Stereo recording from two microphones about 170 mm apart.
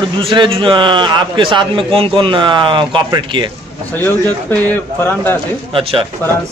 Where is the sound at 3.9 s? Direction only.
10° left (ahead or behind).